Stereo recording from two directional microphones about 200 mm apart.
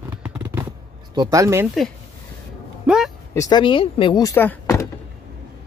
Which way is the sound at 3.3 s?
20° left (ahead or behind).